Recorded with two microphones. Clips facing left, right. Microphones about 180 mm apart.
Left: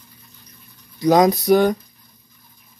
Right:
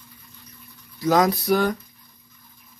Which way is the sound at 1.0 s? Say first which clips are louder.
Left 5 dB; 20° left (ahead or behind).